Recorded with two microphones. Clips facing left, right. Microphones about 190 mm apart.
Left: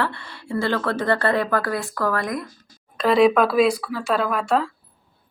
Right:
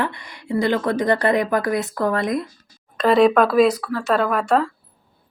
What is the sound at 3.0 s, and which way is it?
Speech, 5° left (ahead or behind).